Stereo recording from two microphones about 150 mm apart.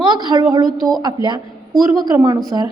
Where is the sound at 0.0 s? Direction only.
30° right (ahead or behind).